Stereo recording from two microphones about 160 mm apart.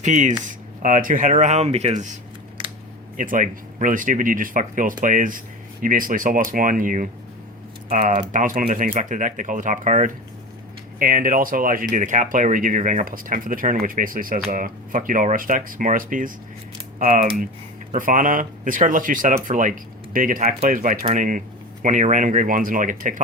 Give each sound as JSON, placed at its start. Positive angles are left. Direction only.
{"t": 0.0, "sound": "speech", "side_deg": -50}
{"t": 3.2, "sound": "speech", "side_deg": -55}